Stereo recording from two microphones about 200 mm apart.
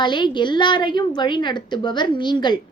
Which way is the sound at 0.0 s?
25° left (ahead or behind).